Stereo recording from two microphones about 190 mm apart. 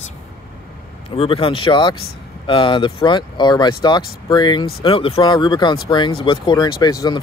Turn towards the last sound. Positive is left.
turn(degrees=20)  # may be behind; listen again after turning